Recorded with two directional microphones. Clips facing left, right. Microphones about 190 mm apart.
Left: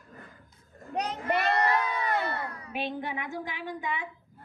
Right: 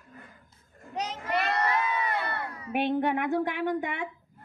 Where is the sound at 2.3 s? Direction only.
60° right (ahead or behind).